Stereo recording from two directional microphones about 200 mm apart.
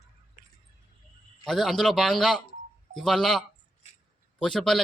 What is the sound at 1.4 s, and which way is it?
Speech, centre (ahead or behind).